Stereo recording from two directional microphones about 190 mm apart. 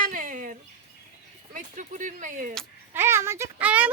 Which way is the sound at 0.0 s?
45° right (ahead or behind).